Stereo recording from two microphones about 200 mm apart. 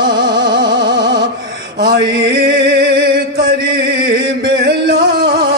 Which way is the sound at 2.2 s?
60° right (ahead or behind).